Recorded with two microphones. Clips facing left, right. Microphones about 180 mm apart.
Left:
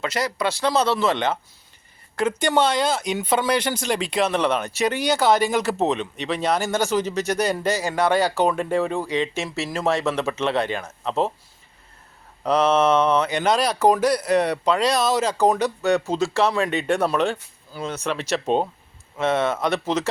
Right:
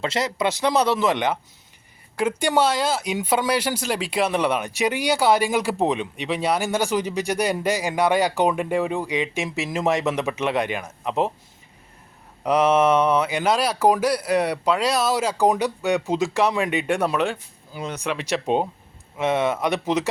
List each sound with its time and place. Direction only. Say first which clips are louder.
0.0 s speech: right 1 dB; 25° right (ahead or behind)
12.4 s speech: even; 10° right (ahead or behind)